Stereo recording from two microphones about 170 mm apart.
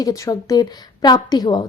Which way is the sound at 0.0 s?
20° left (ahead or behind).